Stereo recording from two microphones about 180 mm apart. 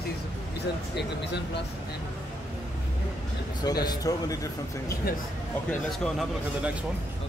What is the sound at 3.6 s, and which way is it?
A man's voice, 20° left (ahead or behind).